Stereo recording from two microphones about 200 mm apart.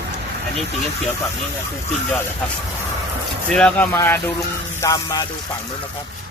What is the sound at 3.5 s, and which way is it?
Speech, 5° left (ahead or behind).